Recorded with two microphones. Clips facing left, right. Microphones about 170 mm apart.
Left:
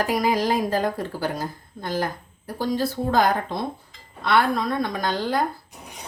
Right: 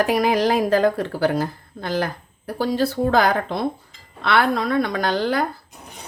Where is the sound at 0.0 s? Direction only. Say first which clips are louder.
Right 4 dB; 70° right (ahead or behind).